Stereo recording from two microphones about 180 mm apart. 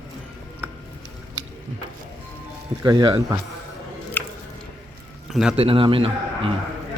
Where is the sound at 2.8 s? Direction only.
25° right (ahead or behind).